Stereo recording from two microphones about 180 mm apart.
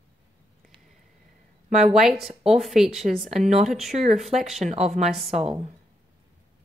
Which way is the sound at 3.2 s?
40° right (ahead or behind).